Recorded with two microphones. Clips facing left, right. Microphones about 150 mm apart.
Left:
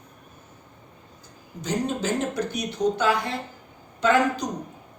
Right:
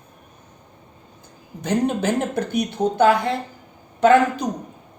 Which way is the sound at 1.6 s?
60° right (ahead or behind).